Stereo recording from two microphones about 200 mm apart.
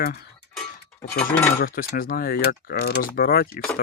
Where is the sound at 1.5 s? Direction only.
45° left (ahead or behind).